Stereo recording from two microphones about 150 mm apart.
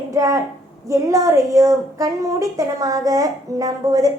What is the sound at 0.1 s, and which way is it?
A child's voice, 20° right (ahead or behind).